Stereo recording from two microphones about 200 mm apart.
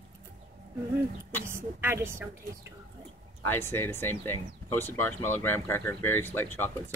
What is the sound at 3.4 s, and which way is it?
Speech, 10° left (ahead or behind).